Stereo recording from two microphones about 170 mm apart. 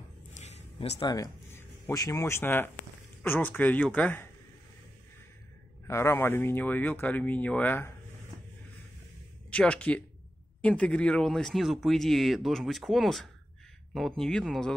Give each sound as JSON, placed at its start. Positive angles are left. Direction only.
{"t": 0.3, "sound": "a sound", "side_deg": 40}
{"t": 0.9, "sound": "speech", "side_deg": 20}
{"t": 5.9, "sound": "speech", "side_deg": 15}
{"t": 9.5, "sound": "speech", "side_deg": 5}